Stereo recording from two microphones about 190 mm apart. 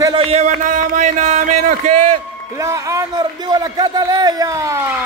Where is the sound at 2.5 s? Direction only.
15° right (ahead or behind).